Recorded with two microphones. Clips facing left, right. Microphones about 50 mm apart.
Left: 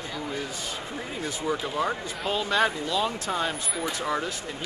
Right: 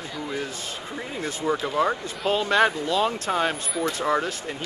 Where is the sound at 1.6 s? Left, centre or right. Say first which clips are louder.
Right 4 dB; centre.